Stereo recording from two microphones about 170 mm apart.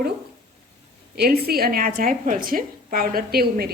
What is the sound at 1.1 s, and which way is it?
A woman's voice, 65° right (ahead or behind).